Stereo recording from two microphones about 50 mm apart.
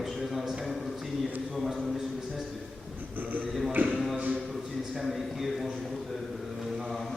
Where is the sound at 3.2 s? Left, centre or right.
Right.